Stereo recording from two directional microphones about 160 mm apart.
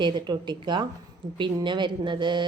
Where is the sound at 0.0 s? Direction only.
30° right (ahead or behind).